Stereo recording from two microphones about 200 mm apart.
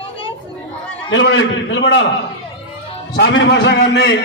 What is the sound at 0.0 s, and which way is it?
Chatter, 25° left (ahead or behind).